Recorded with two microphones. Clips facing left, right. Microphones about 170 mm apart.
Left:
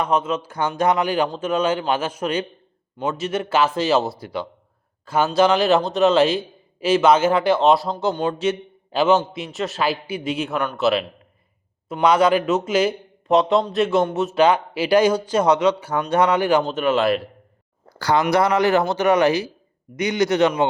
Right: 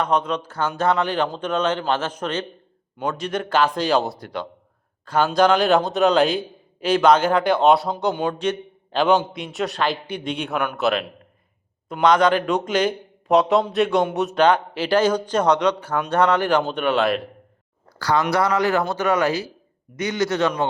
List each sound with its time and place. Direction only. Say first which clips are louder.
0.0 s a man's voice: even; 5° left (ahead or behind)
18.3 s a man's voice: left 4 dB; 20° left (ahead or behind)